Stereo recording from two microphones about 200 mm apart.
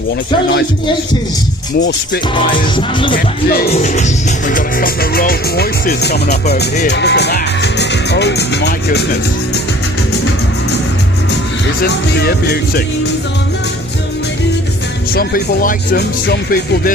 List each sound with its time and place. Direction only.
2.3 s music: 25° left (ahead or behind)
3.7 s music: 35° left (ahead or behind)
4.4 s speech: 45° left (ahead or behind)
11.8 s speech: 55° left (ahead or behind)
15.1 s speech: 50° left (ahead or behind)